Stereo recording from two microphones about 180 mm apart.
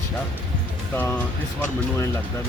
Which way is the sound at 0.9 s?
10° left (ahead or behind).